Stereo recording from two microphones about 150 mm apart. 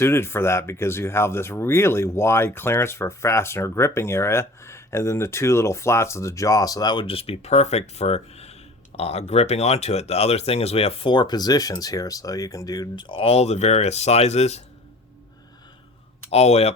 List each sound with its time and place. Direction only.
0.0 s speech: 15° left (ahead or behind); by 14.6 s 45° left (ahead or behind)
16.3 s speech: 45° left (ahead or behind)